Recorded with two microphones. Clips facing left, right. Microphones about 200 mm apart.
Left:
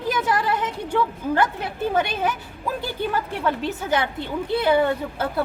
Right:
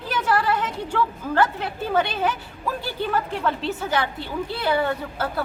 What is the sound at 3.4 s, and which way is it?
A woman's voice, 15° left (ahead or behind).